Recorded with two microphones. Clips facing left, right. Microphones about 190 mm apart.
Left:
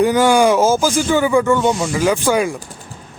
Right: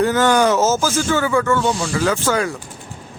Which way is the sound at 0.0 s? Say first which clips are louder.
Left 3 dB; 10° left (ahead or behind).